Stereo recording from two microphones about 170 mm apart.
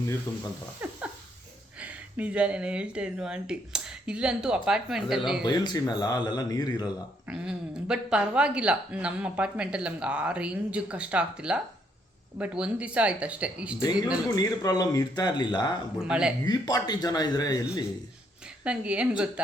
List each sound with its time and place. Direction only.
0.3 s speech: 15° left (ahead or behind)
0.8 s dog: 10° right (ahead or behind)
1.8 s speech: 10° right (ahead or behind)
5.5 s speech: 25° left (ahead or behind)
7.3 s speech: 5° right (ahead or behind)
14.3 s speech: 20° left (ahead or behind)
16.0 s speech: 5° right (ahead or behind)
16.5 s speech: 25° left (ahead or behind)
18.6 s speech: 5° right (ahead or behind)